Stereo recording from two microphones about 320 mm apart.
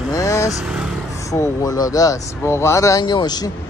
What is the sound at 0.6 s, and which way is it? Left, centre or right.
Speech, centre.